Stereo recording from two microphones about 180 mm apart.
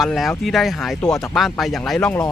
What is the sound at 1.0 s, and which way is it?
Speech, 20° left (ahead or behind).